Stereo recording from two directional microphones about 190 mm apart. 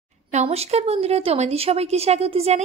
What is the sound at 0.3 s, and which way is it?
A woman's voice, 35° right (ahead or behind).